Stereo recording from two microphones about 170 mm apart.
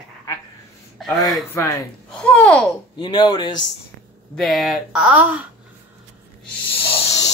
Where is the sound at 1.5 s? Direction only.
15° left (ahead or behind).